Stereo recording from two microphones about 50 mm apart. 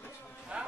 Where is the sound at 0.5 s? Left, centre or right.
Right.